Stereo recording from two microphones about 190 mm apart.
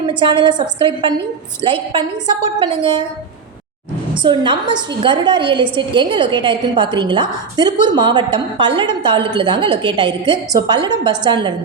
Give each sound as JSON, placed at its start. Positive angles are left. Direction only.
{"t": 0.1, "sound": "a woman's voice", "side_deg": -25}
{"t": 4.1, "sound": "a woman's voice", "side_deg": -25}